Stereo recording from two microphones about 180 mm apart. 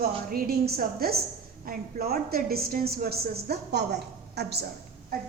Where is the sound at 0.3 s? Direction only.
60° right (ahead or behind).